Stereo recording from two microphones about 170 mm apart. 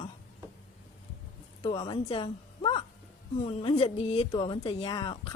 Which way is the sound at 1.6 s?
25° left (ahead or behind).